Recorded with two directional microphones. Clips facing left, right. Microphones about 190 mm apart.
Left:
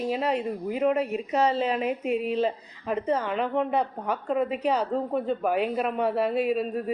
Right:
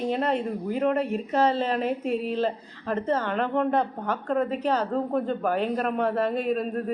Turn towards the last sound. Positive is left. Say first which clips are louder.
# left 1 dB
turn(degrees=5)  # may be behind; listen again after turning